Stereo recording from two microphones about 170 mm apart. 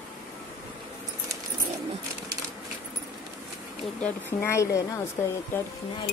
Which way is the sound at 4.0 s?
10° left (ahead or behind).